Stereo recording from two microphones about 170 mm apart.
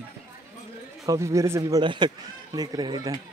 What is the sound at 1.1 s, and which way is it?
Speech, 15° right (ahead or behind).